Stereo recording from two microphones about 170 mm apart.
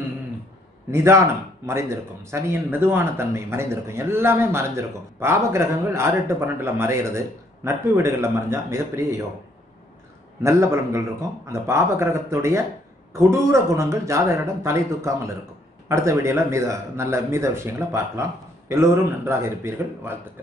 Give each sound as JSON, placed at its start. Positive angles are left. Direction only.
{"t": 0.9, "sound": "speech", "side_deg": -15}
{"t": 10.4, "sound": "speech", "side_deg": -15}